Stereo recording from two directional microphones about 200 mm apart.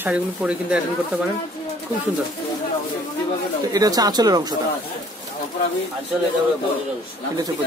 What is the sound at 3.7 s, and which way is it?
Speech, 20° right (ahead or behind).